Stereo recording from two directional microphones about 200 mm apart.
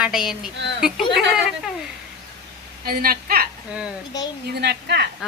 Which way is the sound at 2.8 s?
50° right (ahead or behind).